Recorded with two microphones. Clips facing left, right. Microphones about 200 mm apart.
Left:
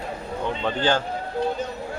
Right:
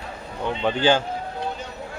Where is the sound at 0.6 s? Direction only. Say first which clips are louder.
Right 4 dB; 10° right (ahead or behind).